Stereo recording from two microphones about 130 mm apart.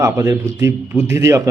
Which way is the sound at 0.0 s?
25° right (ahead or behind).